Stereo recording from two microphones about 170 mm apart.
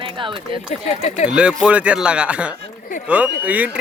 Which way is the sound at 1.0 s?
40° left (ahead or behind).